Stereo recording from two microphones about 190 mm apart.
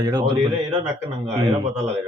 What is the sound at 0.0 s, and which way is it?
Speech, 20° right (ahead or behind).